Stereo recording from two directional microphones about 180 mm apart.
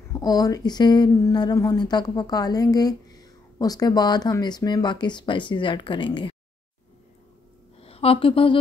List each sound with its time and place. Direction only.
0.1 s speech: 20° left (ahead or behind)
7.8 s speech: 35° left (ahead or behind)